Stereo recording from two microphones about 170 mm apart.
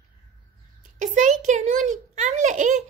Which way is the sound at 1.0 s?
45° right (ahead or behind).